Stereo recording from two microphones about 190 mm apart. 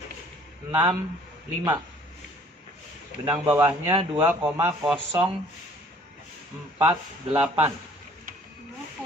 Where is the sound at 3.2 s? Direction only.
25° right (ahead or behind).